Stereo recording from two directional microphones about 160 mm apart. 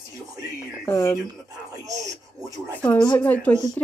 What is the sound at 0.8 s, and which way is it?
Speech, 20° left (ahead or behind).